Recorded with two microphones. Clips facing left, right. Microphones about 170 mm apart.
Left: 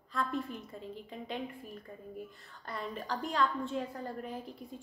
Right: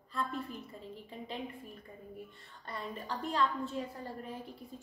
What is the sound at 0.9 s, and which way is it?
Speech, centre (ahead or behind).